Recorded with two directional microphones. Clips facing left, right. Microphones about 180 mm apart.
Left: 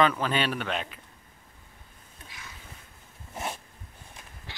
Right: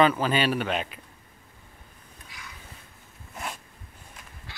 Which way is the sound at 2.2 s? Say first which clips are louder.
Even; 25° left (ahead or behind).